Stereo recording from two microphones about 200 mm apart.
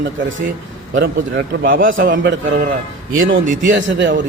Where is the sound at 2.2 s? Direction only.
65° right (ahead or behind).